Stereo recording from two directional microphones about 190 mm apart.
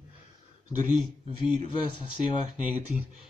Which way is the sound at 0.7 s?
40° right (ahead or behind).